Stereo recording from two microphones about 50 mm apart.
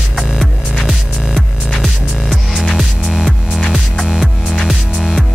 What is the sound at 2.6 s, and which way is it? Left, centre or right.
Music, centre.